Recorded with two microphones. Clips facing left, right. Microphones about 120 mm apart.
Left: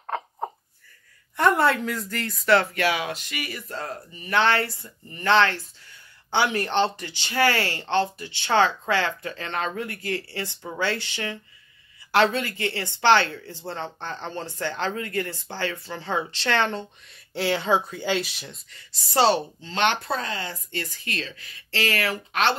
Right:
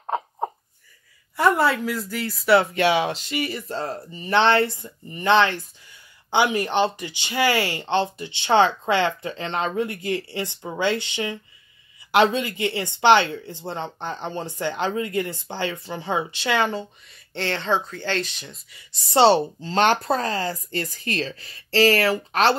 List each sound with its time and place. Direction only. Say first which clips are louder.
0.0 s a sound: right 4 dB; 20° right (ahead or behind)
1.3 s speech: right 1 dB; 5° right (ahead or behind)
17.3 s speech: left 1 dB; 5° left (ahead or behind)
18.7 s speech: right 8 dB; 15° right (ahead or behind); by 22.6 s 35° right (ahead or behind)